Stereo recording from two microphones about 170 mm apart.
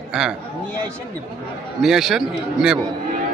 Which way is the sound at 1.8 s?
Centre (ahead or behind).